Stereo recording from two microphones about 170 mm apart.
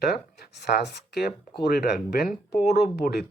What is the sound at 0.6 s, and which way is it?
Speech, 75° left (ahead or behind).